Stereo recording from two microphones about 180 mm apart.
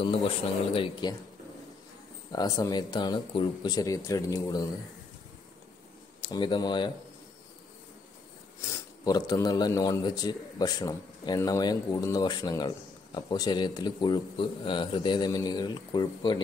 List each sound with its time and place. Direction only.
0.0 s a man's voice: 30° left (ahead or behind)
2.3 s a man's voice: 20° left (ahead or behind)
6.2 s a man's voice: 25° left (ahead or behind)
9.0 s a man's voice: 20° left (ahead or behind)